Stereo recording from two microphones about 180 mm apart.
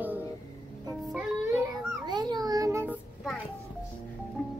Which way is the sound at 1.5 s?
20° right (ahead or behind).